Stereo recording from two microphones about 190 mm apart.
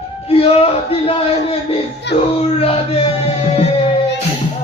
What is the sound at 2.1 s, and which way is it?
Music, 65° left (ahead or behind).